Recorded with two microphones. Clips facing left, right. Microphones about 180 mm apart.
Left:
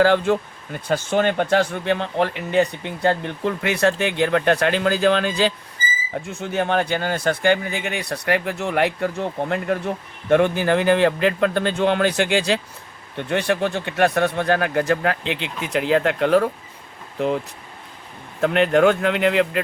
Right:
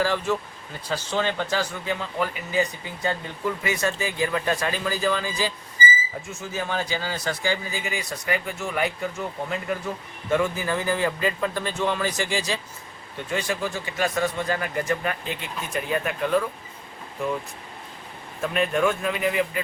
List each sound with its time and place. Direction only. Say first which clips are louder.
0.0 s speech: left 7 dB; 65° left (ahead or behind)